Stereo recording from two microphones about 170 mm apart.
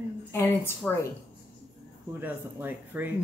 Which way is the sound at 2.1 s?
10° right (ahead or behind).